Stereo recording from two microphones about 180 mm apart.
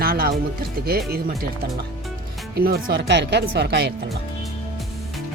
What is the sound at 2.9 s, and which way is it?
Speech, 75° right (ahead or behind).